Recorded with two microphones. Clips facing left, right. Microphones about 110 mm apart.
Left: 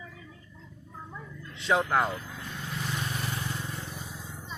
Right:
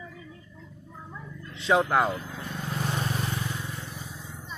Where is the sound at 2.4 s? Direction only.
40° right (ahead or behind).